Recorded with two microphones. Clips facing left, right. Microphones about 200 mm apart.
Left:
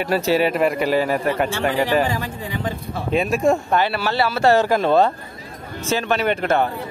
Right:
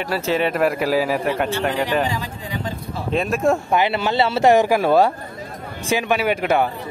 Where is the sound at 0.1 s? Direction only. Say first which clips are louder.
Left 2 dB; 10° left (ahead or behind).